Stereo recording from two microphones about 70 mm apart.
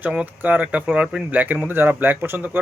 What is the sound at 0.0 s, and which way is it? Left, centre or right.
Speech, centre.